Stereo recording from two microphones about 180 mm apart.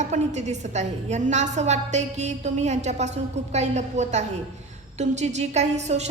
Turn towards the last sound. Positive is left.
turn(degrees=-40)  # may be behind; listen again after turning